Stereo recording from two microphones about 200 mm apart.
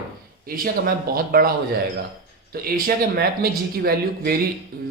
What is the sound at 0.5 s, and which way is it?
Speech, 45° right (ahead or behind).